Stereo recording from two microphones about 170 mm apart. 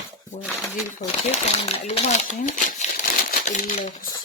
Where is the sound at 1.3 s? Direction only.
40° left (ahead or behind).